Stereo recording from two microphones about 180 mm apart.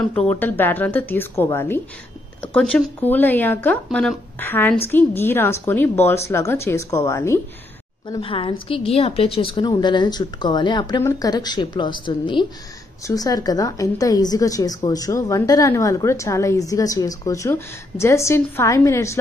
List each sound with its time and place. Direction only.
0.3 s speech: 10° left (ahead or behind)
8.1 s a woman's voice: 30° left (ahead or behind)